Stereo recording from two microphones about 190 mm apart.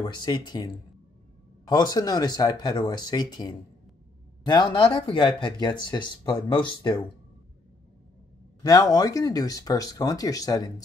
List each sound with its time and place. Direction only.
0.0 s speech: 25° left (ahead or behind)
1.7 s speech: 20° left (ahead or behind)
8.6 s speech: 20° left (ahead or behind)